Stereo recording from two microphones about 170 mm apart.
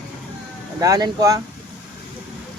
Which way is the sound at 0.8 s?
20° right (ahead or behind).